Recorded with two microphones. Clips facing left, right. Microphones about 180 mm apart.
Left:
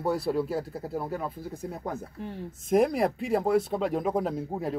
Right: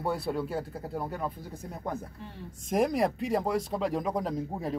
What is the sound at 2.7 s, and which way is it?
Speech, 5° left (ahead or behind).